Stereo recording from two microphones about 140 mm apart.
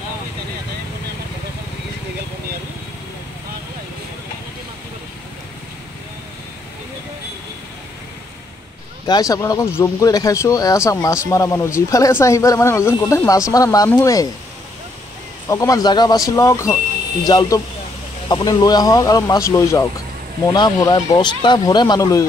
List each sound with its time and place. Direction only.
9.0 s speech: 25° left (ahead or behind)
15.4 s speech: 20° left (ahead or behind)